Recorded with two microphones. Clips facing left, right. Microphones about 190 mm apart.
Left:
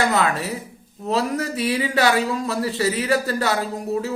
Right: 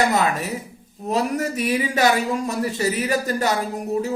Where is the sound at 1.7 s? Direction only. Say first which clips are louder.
Even; 15° right (ahead or behind).